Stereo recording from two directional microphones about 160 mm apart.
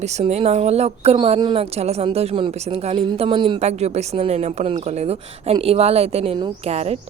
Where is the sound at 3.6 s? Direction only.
45° right (ahead or behind).